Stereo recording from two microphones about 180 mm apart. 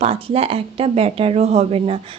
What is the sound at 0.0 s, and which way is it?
Speech, 30° right (ahead or behind).